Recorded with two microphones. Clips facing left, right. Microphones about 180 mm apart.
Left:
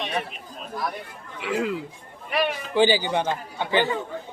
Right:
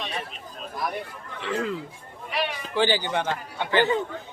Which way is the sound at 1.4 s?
10° left (ahead or behind).